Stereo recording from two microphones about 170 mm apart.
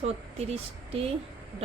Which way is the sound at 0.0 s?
35° right (ahead or behind).